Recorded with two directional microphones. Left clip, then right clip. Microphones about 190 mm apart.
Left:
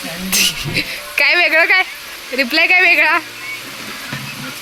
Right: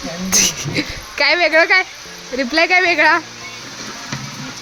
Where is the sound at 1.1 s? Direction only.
15° right (ahead or behind).